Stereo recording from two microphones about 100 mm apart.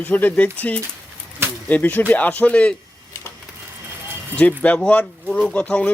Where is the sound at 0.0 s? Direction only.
15° left (ahead or behind).